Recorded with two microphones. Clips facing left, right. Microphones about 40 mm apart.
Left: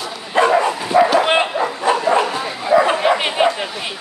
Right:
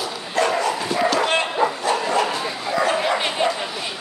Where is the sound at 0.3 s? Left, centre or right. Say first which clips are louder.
Left 6 dB; left.